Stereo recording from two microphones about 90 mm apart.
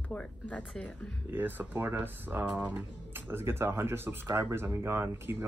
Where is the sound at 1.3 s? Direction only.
20° right (ahead or behind).